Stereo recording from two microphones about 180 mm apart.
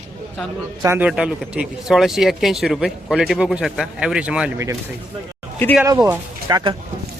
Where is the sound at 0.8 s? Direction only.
10° right (ahead or behind).